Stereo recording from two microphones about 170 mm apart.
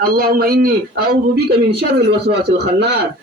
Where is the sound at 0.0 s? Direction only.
60° right (ahead or behind).